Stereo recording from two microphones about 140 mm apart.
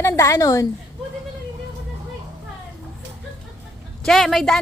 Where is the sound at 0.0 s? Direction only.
20° left (ahead or behind).